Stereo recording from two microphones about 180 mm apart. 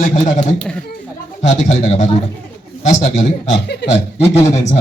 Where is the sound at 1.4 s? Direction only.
40° left (ahead or behind).